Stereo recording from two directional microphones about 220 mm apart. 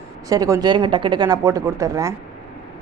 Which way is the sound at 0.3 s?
15° right (ahead or behind).